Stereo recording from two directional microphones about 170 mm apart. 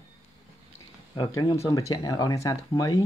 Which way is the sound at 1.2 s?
25° left (ahead or behind).